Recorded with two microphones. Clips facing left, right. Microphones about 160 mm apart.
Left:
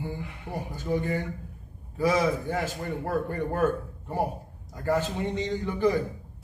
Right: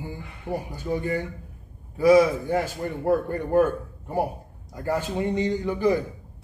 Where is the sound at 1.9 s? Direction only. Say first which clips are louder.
Right 7 dB; 15° right (ahead or behind).